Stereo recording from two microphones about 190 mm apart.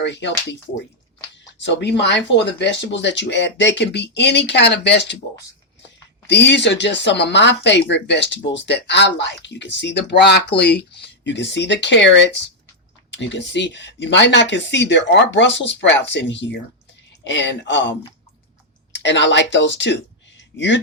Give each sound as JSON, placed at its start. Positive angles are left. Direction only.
{"t": 0.0, "sound": "speech", "side_deg": 65}
{"t": 1.5, "sound": "speech", "side_deg": 65}
{"t": 6.2, "sound": "speech", "side_deg": 65}
{"t": 18.9, "sound": "speech", "side_deg": 70}